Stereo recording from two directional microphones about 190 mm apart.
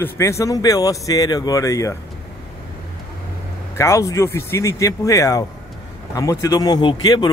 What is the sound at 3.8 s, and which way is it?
Speech, 15° left (ahead or behind).